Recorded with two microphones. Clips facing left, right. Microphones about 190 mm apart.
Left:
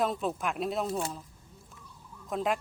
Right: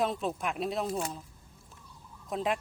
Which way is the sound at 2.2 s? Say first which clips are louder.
Left 1 dB; centre (ahead or behind).